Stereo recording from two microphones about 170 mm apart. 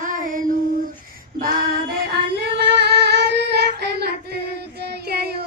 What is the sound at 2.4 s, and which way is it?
Singing, 75° right (ahead or behind).